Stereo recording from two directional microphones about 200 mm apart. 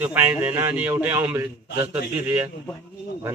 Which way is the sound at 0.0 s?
10° right (ahead or behind).